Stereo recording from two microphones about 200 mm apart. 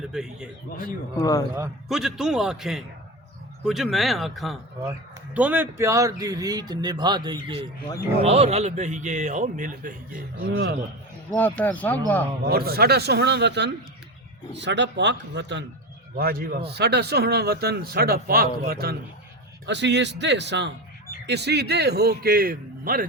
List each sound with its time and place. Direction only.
0.1 s a man's voice: 5° right (ahead or behind)
1.1 s speech: 20° left (ahead or behind)
1.5 s a man's voice: 5° right (ahead or behind)
4.8 s a man's voice: 10° right (ahead or behind); by 10.5 s 40° right (ahead or behind)
10.5 s a man's voice: 55° right (ahead or behind)
11.3 s speech: 10° left (ahead or behind)
12.5 s a man's voice: 50° right (ahead or behind)
16.1 s speech: 45° right (ahead or behind)
19.6 s a man's voice: 60° right (ahead or behind)